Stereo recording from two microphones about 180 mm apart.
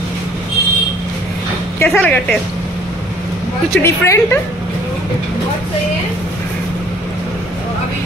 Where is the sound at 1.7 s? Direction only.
10° left (ahead or behind).